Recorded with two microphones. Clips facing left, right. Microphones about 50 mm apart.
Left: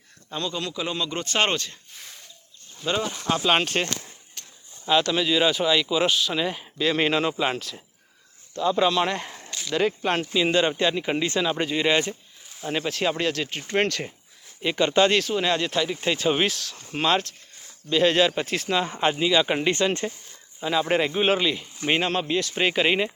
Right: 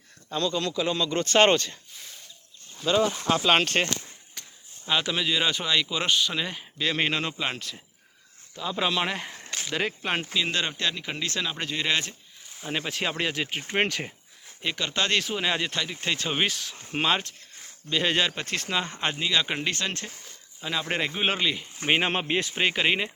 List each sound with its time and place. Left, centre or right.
0.3 s speech: centre
3.0 s speech: centre
4.9 s speech: centre
10.3 s speech: centre
12.5 s speech: centre
14.8 s speech: centre
15.0 s speech: centre
15.7 s speech: centre
16.6 s speech: centre
22.0 s speech: right
22.5 s speech: centre